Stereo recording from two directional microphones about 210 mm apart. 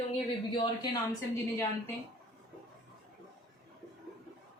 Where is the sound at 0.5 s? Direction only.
20° left (ahead or behind).